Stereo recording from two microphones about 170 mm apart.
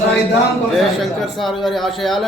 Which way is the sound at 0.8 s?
Centre (ahead or behind).